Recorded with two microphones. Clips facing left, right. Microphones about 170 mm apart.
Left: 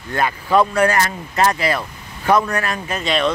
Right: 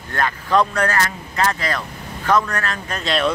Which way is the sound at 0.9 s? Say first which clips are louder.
Left 3 dB; 20° left (ahead or behind).